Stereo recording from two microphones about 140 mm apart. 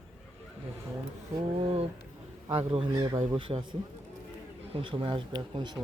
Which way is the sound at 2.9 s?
25° right (ahead or behind).